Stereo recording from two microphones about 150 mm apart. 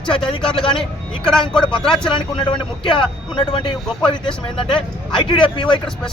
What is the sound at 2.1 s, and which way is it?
Speech, 30° left (ahead or behind).